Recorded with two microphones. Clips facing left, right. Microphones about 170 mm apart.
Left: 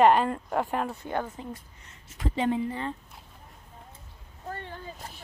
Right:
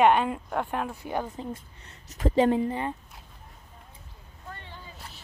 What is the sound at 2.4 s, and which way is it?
Speech, 40° right (ahead or behind).